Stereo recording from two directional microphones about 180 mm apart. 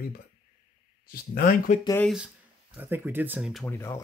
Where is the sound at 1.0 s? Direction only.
55° left (ahead or behind).